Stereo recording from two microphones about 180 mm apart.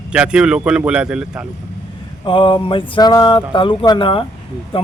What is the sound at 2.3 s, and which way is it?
Speech, 25° left (ahead or behind).